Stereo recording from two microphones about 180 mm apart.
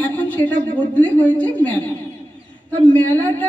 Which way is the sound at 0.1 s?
10° left (ahead or behind).